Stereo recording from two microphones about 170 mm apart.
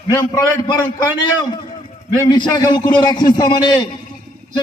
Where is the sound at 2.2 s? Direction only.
25° left (ahead or behind).